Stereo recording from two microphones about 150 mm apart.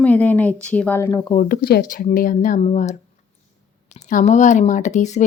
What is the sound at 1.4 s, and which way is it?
Speech, 85° left.